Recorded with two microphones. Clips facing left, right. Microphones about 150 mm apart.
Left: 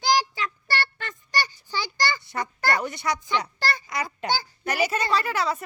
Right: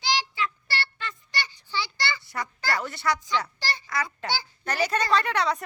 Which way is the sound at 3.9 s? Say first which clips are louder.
Left 1 dB; 20° left (ahead or behind).